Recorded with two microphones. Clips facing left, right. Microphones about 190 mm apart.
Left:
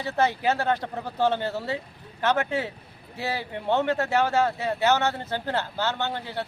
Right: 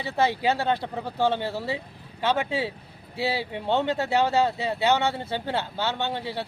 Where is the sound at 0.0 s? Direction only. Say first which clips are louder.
Even; 10° right (ahead or behind).